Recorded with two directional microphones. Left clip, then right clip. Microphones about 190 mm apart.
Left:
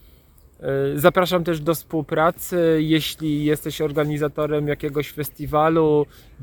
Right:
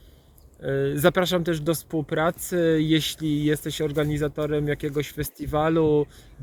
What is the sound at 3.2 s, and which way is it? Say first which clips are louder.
Speech: left 2 dB; 50° left (ahead or behind).